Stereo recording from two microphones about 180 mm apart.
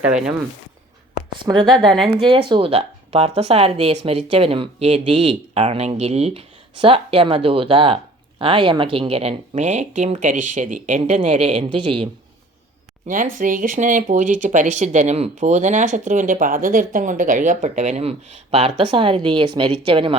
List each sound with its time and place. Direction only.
0.0 s speech: 5° right (ahead or behind)
1.5 s speech: 15° right (ahead or behind)
2.0 s speech: 30° right (ahead or behind)
13.1 s speech: 45° right (ahead or behind); by 20.1 s 30° right (ahead or behind)